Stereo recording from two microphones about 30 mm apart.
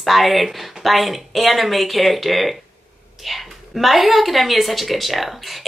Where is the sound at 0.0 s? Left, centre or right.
Centre.